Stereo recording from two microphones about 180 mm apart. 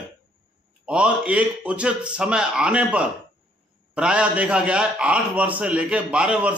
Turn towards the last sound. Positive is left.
turn(degrees=-5)  # may be behind; listen again after turning